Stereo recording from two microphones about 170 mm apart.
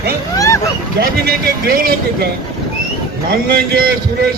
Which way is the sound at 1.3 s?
60° right (ahead or behind).